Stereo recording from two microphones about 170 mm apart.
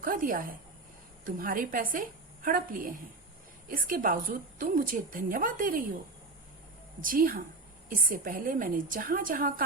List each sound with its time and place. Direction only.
0.0 s a woman's voice: 55° right (ahead or behind)
7.0 s a woman's voice: 55° right (ahead or behind)